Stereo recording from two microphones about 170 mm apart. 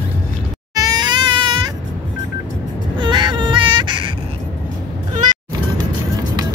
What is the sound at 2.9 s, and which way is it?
Baby cry, 25° right (ahead or behind).